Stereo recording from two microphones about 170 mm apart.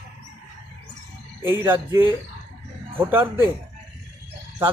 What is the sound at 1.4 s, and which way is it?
Speech, 15° right (ahead or behind).